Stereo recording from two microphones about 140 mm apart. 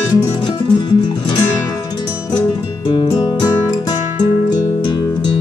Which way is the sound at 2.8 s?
30° left (ahead or behind).